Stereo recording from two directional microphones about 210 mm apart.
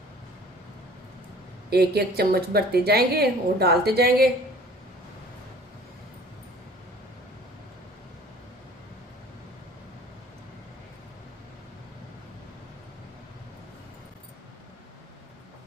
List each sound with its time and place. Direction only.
1.7 s a woman's voice: 50° right (ahead or behind)